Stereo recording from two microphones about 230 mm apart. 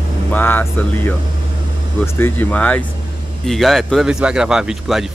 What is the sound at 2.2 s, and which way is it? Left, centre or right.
Speech, centre.